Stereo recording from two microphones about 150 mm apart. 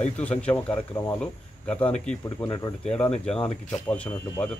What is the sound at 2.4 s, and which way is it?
Speech, 25° left (ahead or behind).